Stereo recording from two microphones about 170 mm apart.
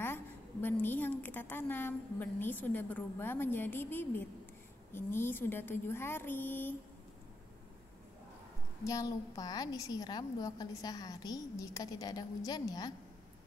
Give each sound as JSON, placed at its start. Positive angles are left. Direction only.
{"t": 0.0, "sound": "a woman's voice", "side_deg": 10}
{"t": 8.8, "sound": "a woman's voice", "side_deg": 20}